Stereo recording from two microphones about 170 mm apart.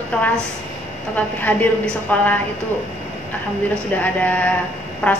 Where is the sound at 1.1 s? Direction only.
10° left (ahead or behind).